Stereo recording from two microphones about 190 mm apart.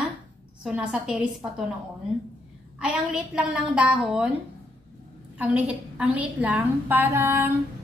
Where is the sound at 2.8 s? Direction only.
5° right (ahead or behind).